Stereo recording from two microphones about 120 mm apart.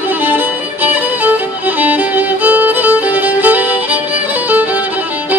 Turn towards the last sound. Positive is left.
turn(degrees=-15)  # may be behind; listen again after turning